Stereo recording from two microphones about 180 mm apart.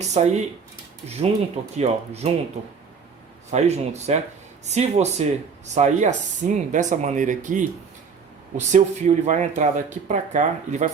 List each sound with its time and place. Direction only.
0.0 s speech: 40° right (ahead or behind)
3.5 s speech: 40° right (ahead or behind)